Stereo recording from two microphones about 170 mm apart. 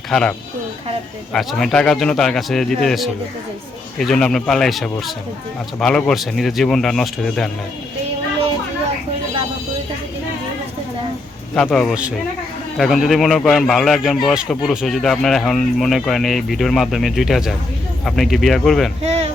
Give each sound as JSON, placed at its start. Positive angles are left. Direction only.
{"t": 0.1, "sound": "speech", "side_deg": 5}
{"t": 11.5, "sound": "speech", "side_deg": 5}
{"t": 19.0, "sound": "a sound", "side_deg": -40}